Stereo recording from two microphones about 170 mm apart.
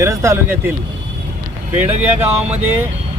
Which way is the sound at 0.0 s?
15° right (ahead or behind).